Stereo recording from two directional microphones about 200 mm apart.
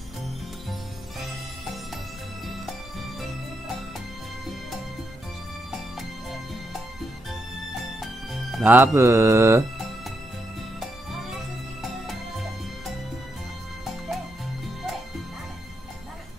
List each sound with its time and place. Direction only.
5.7 s music: centre (ahead or behind)
8.0 s music: centre (ahead or behind)